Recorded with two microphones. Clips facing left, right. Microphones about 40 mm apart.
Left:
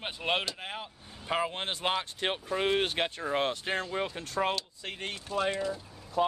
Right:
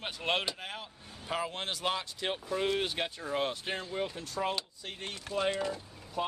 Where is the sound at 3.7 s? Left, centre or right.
Left.